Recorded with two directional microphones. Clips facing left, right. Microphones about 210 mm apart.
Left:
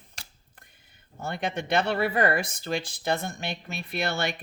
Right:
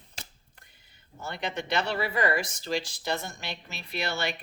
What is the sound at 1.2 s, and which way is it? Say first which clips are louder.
A woman's voice: left 3 dB; 50° left (ahead or behind).